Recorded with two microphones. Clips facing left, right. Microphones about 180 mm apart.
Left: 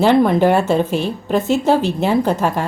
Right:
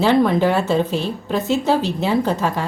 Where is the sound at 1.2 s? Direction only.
55° left (ahead or behind).